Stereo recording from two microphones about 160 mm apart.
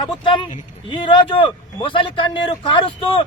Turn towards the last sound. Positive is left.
turn(degrees=30)  # may be behind; listen again after turning